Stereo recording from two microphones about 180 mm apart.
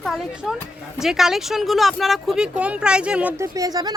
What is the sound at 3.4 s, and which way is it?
Speech, 20° right (ahead or behind).